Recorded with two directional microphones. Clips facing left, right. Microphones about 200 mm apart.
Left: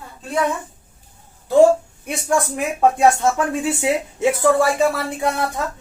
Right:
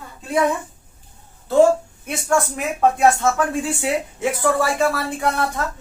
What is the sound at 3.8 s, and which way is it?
Speech, 20° left (ahead or behind).